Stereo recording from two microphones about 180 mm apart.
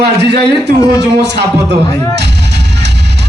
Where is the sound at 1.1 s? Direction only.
70° right (ahead or behind).